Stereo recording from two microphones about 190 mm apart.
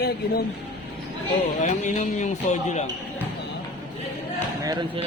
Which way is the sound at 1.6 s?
40° left (ahead or behind).